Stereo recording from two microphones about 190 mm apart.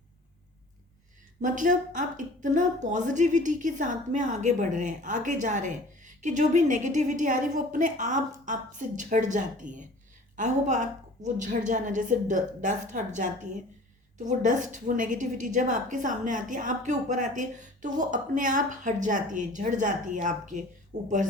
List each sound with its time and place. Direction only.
1.4 s a woman's voice: 40° right (ahead or behind)
20.9 s a woman's voice: 60° right (ahead or behind)